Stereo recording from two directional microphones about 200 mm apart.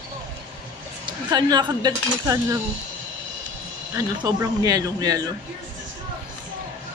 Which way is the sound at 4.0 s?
20° right (ahead or behind).